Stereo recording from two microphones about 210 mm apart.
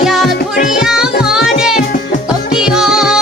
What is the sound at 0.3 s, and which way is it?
Music, 45° left (ahead or behind).